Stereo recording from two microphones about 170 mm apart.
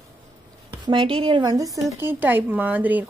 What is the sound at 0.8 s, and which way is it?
A woman's voice, 30° right (ahead or behind).